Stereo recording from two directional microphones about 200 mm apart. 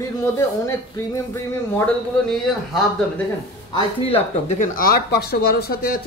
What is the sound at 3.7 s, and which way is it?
Speech, 30° left (ahead or behind).